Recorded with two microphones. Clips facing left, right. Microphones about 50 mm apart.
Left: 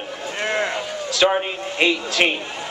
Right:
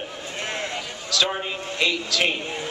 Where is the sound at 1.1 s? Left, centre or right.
Left.